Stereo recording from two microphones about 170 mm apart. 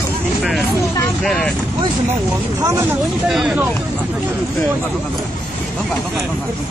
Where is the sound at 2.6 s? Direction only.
15° right (ahead or behind).